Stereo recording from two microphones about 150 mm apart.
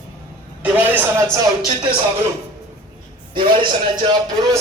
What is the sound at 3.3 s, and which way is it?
Speech, 35° right (ahead or behind).